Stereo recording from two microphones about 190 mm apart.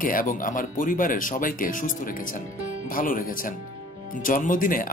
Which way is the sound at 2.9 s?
45° left (ahead or behind).